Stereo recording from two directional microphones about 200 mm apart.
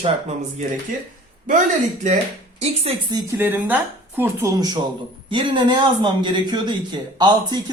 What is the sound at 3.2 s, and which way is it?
A woman's voice, 10° right (ahead or behind).